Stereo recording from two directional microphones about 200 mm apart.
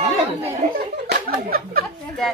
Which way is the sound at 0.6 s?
35° right (ahead or behind).